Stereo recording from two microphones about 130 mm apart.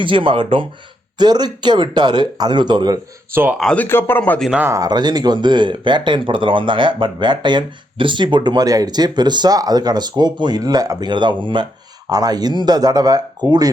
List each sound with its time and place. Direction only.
0.0 s speech: 40° right (ahead or behind)
3.6 s a man's voice: 5° left (ahead or behind)
3.8 s a man's voice: 15° left (ahead or behind)
4.5 s speech: 15° right (ahead or behind)
4.8 s speech: 35° right (ahead or behind)